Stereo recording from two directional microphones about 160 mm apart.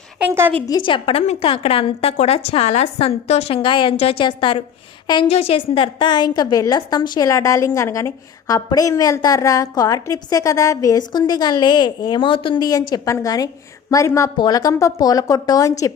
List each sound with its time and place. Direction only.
0.2 s a woman's voice: 15° right (ahead or behind)
0.6 s a woman's voice: 25° left (ahead or behind)